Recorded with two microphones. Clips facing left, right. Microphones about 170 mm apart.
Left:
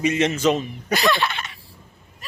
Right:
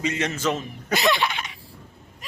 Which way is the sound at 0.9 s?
20° right (ahead or behind).